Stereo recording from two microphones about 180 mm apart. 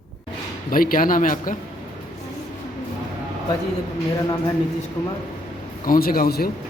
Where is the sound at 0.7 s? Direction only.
50° left (ahead or behind).